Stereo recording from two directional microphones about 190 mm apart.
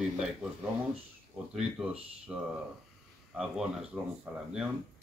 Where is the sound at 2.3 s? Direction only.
5° right (ahead or behind).